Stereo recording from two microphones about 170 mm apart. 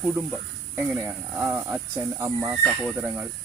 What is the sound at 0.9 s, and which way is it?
Speech, 15° right (ahead or behind).